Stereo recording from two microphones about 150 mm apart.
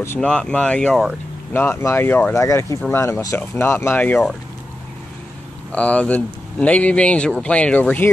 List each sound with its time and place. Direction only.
0.0 s speech: 10° left (ahead or behind)
5.7 s speech: 10° left (ahead or behind)